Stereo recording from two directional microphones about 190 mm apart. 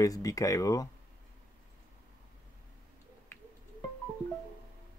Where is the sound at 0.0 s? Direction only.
20° left (ahead or behind).